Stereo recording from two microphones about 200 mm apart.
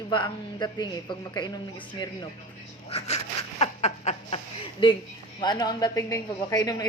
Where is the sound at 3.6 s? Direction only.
35° left (ahead or behind).